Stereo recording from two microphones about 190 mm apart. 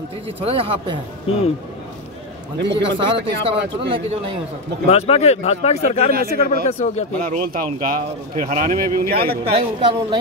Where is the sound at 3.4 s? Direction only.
30° right (ahead or behind).